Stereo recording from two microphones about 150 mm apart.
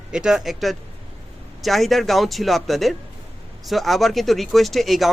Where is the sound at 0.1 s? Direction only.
5° right (ahead or behind).